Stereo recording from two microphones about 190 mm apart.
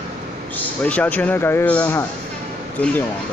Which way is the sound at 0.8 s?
10° left (ahead or behind).